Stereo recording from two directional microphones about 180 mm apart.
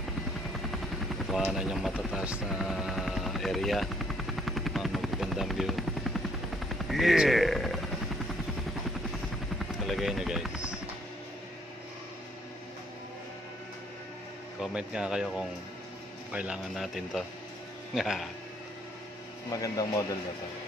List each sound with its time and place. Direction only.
1.2 s helicopter: centre (ahead or behind)
6.7 s a sound: centre (ahead or behind)
9.6 s helicopter: centre (ahead or behind)
14.6 s a man's voice: 5° right (ahead or behind)
19.5 s speech: 20° left (ahead or behind)